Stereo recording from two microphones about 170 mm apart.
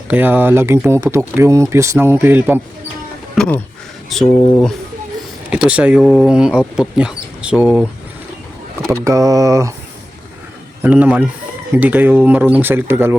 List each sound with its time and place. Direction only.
0.1 s speech: 10° right (ahead or behind)
3.3 s speech: 5° left (ahead or behind)
8.9 s speech: 20° right (ahead or behind)
10.8 s speech: 10° right (ahead or behind)